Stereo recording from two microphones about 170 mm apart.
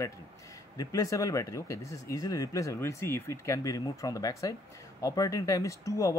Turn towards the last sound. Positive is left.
turn(degrees=20)  # may be behind; listen again after turning